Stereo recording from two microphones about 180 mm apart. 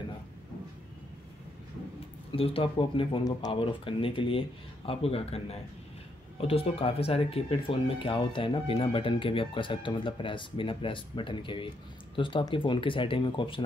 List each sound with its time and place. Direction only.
2.3 s speech: 30° left (ahead or behind)